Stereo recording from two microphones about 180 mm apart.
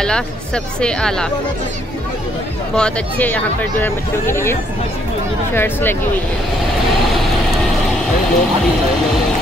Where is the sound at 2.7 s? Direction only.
5° left (ahead or behind).